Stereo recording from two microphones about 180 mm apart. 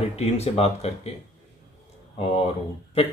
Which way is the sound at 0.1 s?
35° left (ahead or behind).